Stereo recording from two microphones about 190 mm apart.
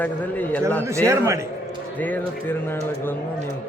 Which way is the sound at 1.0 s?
15° right (ahead or behind).